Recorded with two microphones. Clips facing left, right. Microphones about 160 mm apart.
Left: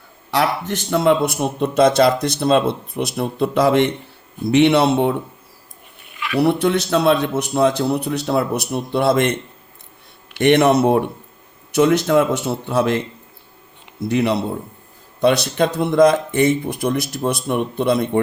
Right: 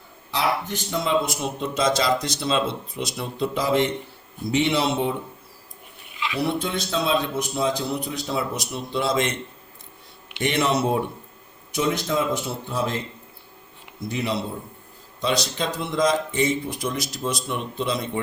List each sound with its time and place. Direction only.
0.3 s speech: 75° left (ahead or behind)
6.3 s speech: 65° left (ahead or behind)
10.4 s speech: 60° left (ahead or behind)
11.7 s speech: 75° left (ahead or behind)
14.1 s speech: 65° left (ahead or behind)